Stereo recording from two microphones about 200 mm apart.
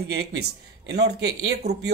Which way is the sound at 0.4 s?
55° right (ahead or behind).